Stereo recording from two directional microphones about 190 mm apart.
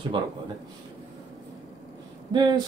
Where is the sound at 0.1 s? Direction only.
25° right (ahead or behind).